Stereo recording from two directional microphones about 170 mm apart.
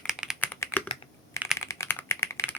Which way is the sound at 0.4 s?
10° left (ahead or behind).